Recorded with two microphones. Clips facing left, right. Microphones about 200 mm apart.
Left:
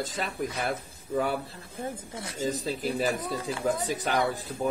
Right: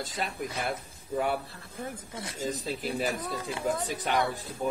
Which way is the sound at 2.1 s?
30° left (ahead or behind).